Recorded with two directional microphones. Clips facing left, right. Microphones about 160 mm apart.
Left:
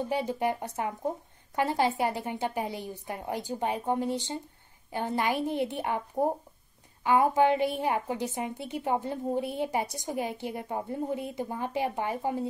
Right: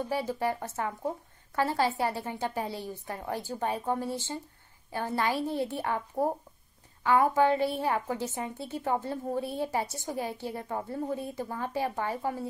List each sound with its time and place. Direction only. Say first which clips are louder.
0.1 s a woman's voice: left 1 dB; 20° left (ahead or behind)